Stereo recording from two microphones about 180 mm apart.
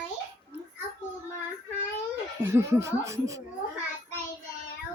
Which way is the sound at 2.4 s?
15° right (ahead or behind).